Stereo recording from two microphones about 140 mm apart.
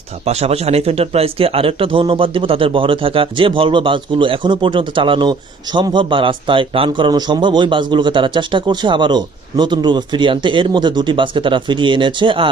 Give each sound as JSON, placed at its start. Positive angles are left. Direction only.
{"t": 0.3, "sound": "a man's voice", "side_deg": -50}